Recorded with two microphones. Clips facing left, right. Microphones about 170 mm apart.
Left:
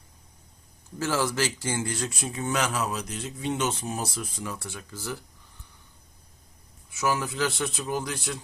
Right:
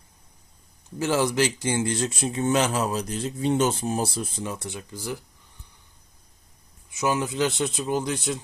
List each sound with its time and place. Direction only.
0.9 s speech: 20° right (ahead or behind)
6.9 s speech: 20° right (ahead or behind)